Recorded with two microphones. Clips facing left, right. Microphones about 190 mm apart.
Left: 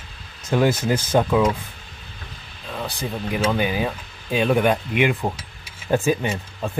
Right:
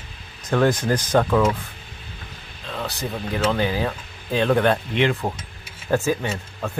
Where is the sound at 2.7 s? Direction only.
10° left (ahead or behind).